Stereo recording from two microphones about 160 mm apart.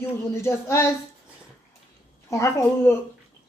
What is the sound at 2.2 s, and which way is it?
Speech, 20° left (ahead or behind).